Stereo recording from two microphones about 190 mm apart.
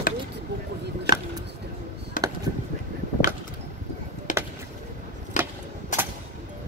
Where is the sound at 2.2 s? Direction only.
45° left (ahead or behind).